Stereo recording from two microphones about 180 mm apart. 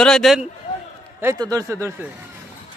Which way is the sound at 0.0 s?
Centre (ahead or behind).